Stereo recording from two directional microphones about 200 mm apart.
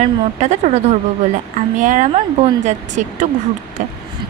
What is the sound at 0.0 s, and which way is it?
A woman's voice, 35° right (ahead or behind).